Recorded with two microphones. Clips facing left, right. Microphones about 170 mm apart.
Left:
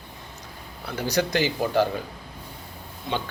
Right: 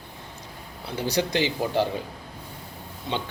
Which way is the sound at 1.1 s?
25° right (ahead or behind).